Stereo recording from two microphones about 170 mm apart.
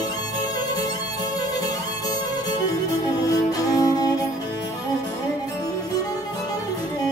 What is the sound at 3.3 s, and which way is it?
Music, 20° left (ahead or behind).